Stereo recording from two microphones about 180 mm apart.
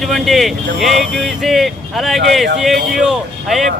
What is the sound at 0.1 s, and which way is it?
Speech, centre (ahead or behind).